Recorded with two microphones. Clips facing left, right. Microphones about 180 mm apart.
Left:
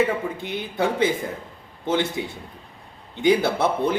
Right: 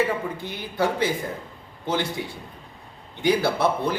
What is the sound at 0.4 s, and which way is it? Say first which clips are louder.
A man's voice: left 1 dB; 20° left (ahead or behind).